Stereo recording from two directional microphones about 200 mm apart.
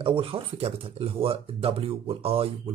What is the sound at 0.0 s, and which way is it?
Speech, 30° right (ahead or behind).